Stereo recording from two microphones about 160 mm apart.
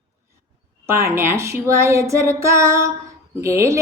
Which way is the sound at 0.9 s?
15° right (ahead or behind).